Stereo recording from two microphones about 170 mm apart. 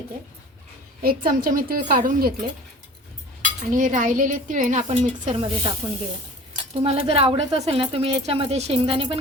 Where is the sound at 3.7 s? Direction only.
50° right (ahead or behind).